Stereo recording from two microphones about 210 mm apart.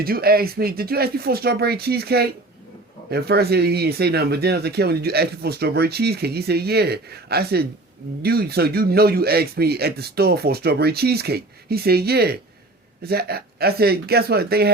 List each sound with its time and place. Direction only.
0.0 s speech: 45° right (ahead or behind)